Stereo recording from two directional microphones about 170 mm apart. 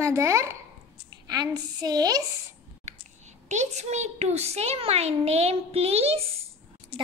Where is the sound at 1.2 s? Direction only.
20° right (ahead or behind).